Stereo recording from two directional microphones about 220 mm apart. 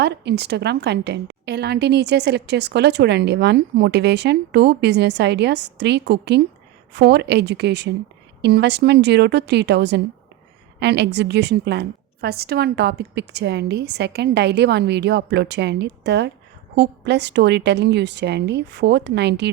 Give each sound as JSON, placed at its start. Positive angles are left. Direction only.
{"t": 0.0, "sound": "a woman's voice", "side_deg": -50}